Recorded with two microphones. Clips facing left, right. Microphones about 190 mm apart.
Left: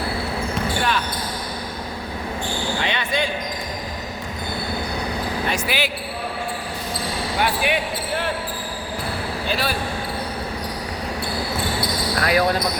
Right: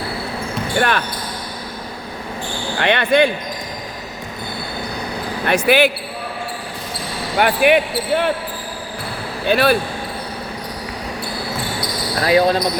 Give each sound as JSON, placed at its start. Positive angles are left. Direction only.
{"t": 0.8, "sound": "speech", "side_deg": -60}
{"t": 2.8, "sound": "speech", "side_deg": -60}
{"t": 5.5, "sound": "speech", "side_deg": -60}
{"t": 7.3, "sound": "speech", "side_deg": -60}
{"t": 9.5, "sound": "speech", "side_deg": -60}
{"t": 12.2, "sound": "speech", "side_deg": -25}